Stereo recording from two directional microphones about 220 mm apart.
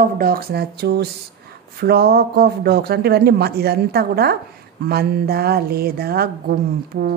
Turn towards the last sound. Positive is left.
turn(degrees=-40)  # may be behind; listen again after turning